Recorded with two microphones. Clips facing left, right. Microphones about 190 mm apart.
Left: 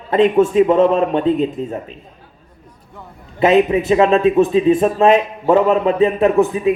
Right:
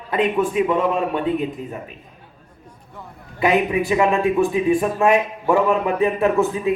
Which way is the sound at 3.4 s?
25° left (ahead or behind).